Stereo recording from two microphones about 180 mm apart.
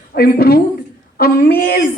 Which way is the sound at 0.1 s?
55° left (ahead or behind).